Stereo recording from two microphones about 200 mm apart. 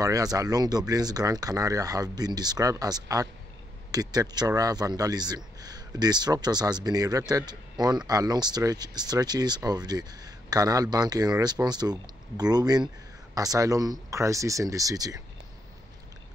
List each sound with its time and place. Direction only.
0.0 s speech: 15° right (ahead or behind)